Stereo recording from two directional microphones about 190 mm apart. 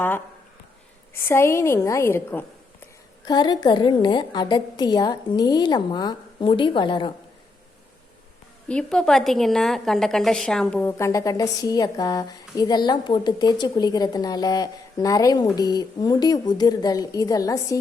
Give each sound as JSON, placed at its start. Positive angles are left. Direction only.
{"t": 1.1, "sound": "a woman's voice", "side_deg": 15}
{"t": 8.6, "sound": "a woman's voice", "side_deg": 5}